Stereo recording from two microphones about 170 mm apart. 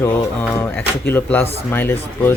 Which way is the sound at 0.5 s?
10° left (ahead or behind).